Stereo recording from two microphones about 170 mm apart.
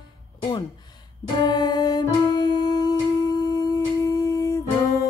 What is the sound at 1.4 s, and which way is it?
Music, 25° left (ahead or behind).